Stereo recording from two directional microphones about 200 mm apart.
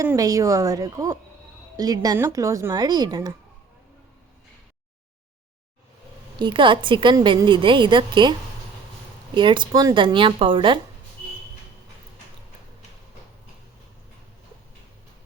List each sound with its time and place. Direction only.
0.0 s speech: 15° right (ahead or behind)
6.4 s a woman's voice: 25° right (ahead or behind)